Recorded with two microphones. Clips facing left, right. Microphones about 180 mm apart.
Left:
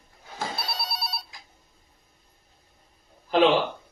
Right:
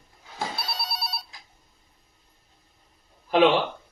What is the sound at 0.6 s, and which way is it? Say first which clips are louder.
Telephone bell ringing: even; centre (ahead or behind).